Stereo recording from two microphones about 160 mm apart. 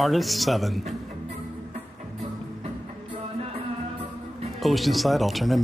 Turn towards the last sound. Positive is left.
turn(degrees=0)  # may be behind; listen again after turning